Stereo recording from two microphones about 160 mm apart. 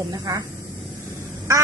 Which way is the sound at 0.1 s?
25° right (ahead or behind).